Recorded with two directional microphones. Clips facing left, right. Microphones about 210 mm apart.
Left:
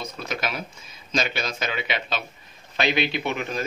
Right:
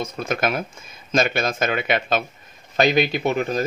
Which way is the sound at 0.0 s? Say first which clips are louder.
Right 7 dB; 50° right (ahead or behind).